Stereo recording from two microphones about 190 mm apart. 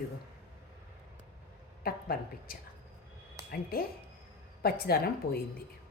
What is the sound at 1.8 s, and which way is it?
A woman's voice, 50° left (ahead or behind).